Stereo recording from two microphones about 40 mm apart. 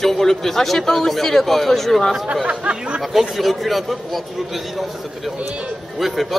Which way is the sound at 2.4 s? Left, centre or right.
Right.